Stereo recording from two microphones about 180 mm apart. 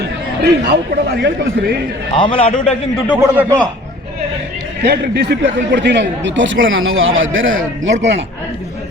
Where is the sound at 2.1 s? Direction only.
30° left (ahead or behind).